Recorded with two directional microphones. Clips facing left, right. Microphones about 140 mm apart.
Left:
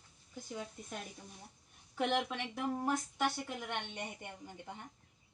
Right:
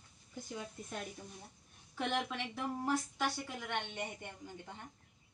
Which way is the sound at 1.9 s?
10° left (ahead or behind).